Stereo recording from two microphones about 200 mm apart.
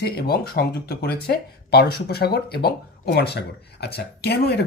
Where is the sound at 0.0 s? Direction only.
50° left (ahead or behind).